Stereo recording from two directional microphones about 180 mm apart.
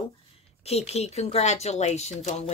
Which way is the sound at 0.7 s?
35° left (ahead or behind).